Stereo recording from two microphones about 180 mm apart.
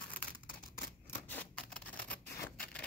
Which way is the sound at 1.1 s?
10° left (ahead or behind).